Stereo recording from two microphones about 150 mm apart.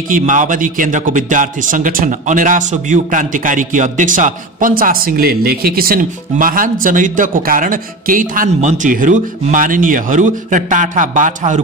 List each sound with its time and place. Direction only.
0.1 s a man's voice: 60° right (ahead or behind)